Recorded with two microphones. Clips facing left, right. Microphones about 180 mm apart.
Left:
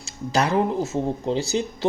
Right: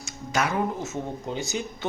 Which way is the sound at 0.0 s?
35° left (ahead or behind).